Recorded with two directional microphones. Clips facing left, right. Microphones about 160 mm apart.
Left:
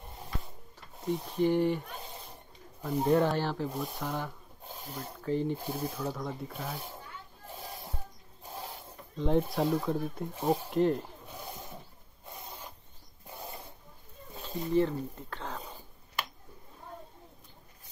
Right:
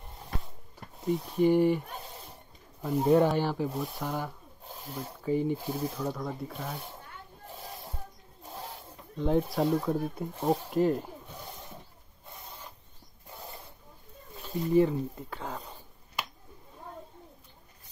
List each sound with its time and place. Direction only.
1.3 s speech: 10° right (ahead or behind)
2.8 s speech: 5° right (ahead or behind)
5.7 s speech: centre (ahead or behind)
9.2 s speech: centre (ahead or behind)
14.7 s speech: 10° right (ahead or behind)